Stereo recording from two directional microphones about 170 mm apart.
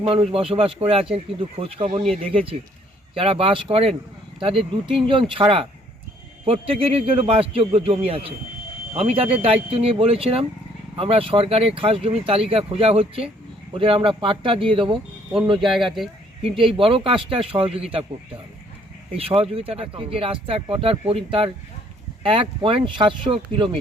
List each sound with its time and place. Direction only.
0.0 s speech: 35° right (ahead or behind)
15.7 s speech: centre (ahead or behind)
16.4 s speech: 30° right (ahead or behind)
19.1 s speech: 35° right (ahead or behind)